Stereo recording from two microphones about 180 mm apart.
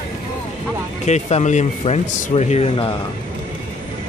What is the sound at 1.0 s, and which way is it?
Speech, 40° left (ahead or behind).